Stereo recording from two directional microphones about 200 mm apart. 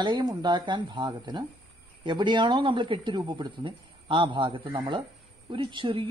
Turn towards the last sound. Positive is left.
turn(degrees=-25)  # may be behind; listen again after turning